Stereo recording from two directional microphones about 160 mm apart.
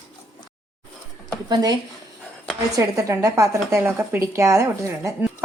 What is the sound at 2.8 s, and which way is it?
A woman's voice, 20° right (ahead or behind).